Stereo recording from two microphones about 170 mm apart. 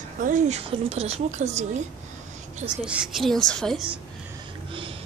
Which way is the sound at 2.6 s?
5° right (ahead or behind).